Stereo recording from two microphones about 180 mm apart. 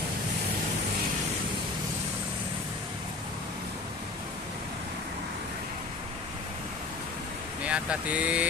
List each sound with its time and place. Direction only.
7.6 s speech: 5° right (ahead or behind)